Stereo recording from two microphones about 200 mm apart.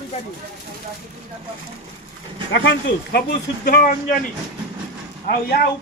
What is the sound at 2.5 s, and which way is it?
Speech, 60° left (ahead or behind).